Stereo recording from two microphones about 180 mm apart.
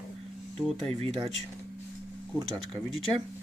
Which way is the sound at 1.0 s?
35° right (ahead or behind).